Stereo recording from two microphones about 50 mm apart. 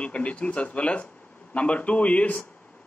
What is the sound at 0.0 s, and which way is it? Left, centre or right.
A man's voice, left.